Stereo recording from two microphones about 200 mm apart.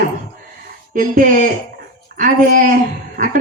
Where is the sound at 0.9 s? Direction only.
40° right (ahead or behind).